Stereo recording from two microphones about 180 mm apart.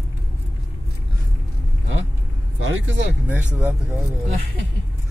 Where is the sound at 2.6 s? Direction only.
90° right.